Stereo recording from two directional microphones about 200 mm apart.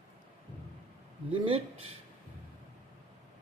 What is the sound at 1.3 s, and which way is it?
Speech, 25° right (ahead or behind).